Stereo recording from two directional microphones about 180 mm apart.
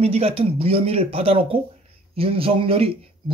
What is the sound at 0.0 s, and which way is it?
A man's voice, 35° right (ahead or behind).